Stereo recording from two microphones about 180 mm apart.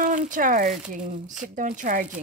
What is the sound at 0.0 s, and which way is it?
Speech, 45° right (ahead or behind).